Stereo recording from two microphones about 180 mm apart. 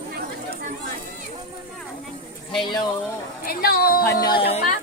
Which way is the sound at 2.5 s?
25° left (ahead or behind).